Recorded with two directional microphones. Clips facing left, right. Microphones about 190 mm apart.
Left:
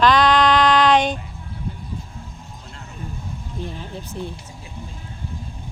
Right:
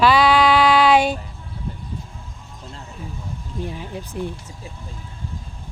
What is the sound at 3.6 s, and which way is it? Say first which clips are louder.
Speech: right 3 dB; 10° right (ahead or behind).